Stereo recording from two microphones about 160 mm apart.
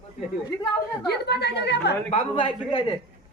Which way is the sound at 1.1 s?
90° left.